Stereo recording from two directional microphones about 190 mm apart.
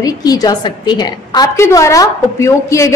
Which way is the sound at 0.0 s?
20° left (ahead or behind).